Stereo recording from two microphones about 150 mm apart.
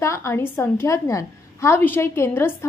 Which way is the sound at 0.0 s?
20° left (ahead or behind).